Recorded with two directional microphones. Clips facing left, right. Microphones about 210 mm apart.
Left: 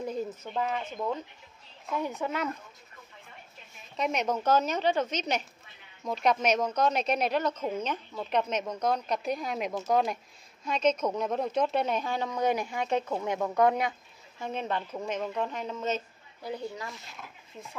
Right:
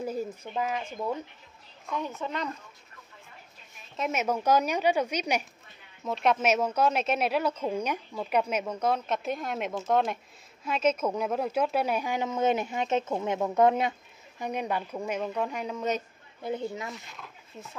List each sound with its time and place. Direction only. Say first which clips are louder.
0.0 s a sound: right 1 dB; 10° right (ahead or behind)
0.4 s speech: even; 5° right (ahead or behind)
1.9 s a woman's voice: left 2 dB; 15° left (ahead or behind)
3.9 s speech: even; 5° right (ahead or behind)
16.4 s speech: right 3 dB; 20° right (ahead or behind)